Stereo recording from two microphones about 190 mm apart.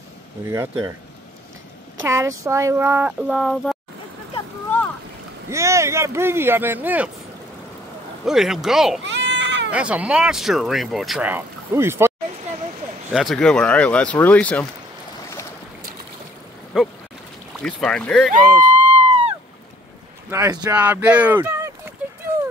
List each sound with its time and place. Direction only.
0.5 s speech: 15° right (ahead or behind)
2.0 s speech: 15° right (ahead or behind)
5.5 s speech: 15° right (ahead or behind)
8.3 s speech: centre (ahead or behind)
9.0 s baby cry: 70° right (ahead or behind)
9.7 s speech: 5° right (ahead or behind)
13.1 s speech: centre (ahead or behind)
16.7 s speech: centre (ahead or behind)
18.9 s a sound: 30° right (ahead or behind)
20.2 s speech: 15° right (ahead or behind)
20.7 s speech: 10° right (ahead or behind)